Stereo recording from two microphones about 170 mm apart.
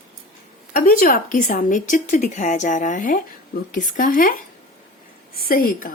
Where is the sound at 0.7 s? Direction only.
60° left (ahead or behind).